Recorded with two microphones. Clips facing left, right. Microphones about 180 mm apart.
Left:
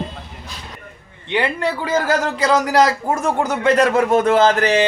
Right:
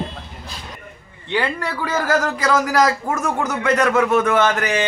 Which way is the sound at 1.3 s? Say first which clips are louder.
Left 3 dB; 20° left (ahead or behind).